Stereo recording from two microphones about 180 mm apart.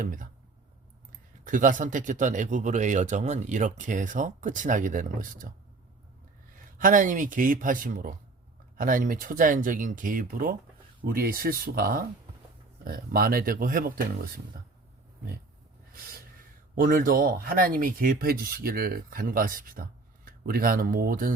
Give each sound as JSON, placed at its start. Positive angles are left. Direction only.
{"t": 0.0, "sound": "speech", "side_deg": -50}
{"t": 1.5, "sound": "speech", "side_deg": -45}
{"t": 6.7, "sound": "speech", "side_deg": -45}
{"t": 16.7, "sound": "speech", "side_deg": -50}